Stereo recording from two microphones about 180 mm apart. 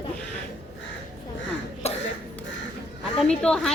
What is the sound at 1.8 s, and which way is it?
Cough, 35° left (ahead or behind).